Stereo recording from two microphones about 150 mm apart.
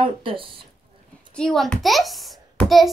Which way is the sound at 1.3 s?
5° left (ahead or behind).